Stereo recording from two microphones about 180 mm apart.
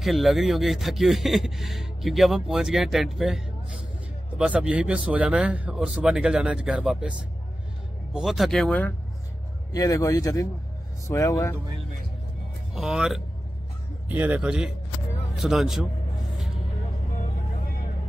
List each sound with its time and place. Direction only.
0.0 s a man's voice: centre (ahead or behind)
9.7 s speech: 20° left (ahead or behind)
12.7 s a man's voice: 5° right (ahead or behind)